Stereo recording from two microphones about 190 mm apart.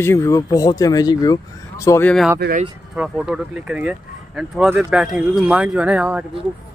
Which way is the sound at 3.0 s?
5° right (ahead or behind).